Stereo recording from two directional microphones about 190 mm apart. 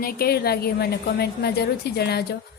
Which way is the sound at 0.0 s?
50° left (ahead or behind).